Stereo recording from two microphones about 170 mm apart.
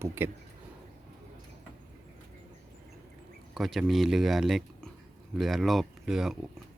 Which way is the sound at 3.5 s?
Centre (ahead or behind).